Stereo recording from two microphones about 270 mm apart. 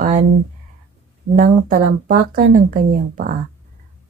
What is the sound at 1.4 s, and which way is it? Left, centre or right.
A woman's voice, right.